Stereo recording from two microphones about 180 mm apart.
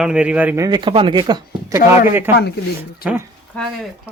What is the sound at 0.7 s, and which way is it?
Speech, 25° right (ahead or behind).